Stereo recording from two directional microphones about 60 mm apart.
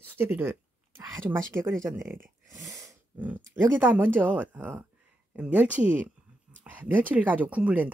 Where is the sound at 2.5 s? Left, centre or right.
Right.